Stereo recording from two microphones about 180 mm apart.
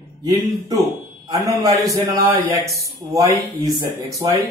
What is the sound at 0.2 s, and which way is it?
Speech, 20° right (ahead or behind).